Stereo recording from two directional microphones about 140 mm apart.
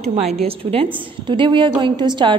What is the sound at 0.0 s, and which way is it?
A woman's voice, 50° right (ahead or behind).